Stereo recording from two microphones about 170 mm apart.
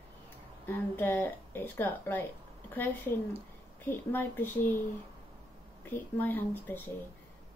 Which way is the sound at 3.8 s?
15° left (ahead or behind).